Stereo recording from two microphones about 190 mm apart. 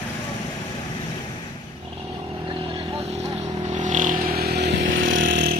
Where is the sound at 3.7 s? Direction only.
40° right (ahead or behind); by 5.2 s 90° right.